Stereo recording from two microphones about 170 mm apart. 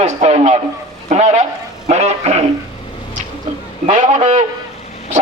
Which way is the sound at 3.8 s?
45° right (ahead or behind).